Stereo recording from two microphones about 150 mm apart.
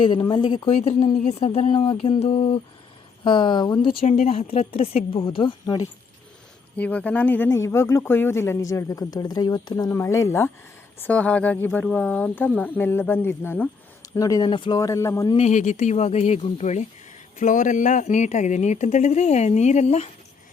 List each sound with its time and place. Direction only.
0.0 s speech: 35° left (ahead or behind)
4.0 s speech: 60° left (ahead or behind)
4.3 s speech: 40° left (ahead or behind)
6.7 s speech: 10° left (ahead or behind); by 14.8 s 30° left (ahead or behind)
14.8 s speech: 20° left (ahead or behind)
15.4 s speech: 50° left (ahead or behind)